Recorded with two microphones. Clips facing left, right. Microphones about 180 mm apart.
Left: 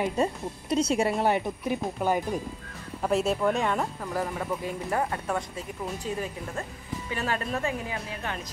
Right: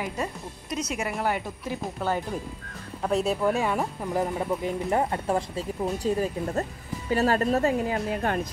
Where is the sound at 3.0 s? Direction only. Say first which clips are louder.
Even; centre (ahead or behind).